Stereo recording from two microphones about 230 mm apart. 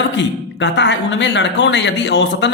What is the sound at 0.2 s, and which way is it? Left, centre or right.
Speech, left.